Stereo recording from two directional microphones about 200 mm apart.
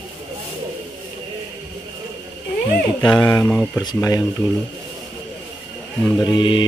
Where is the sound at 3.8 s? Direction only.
20° left (ahead or behind).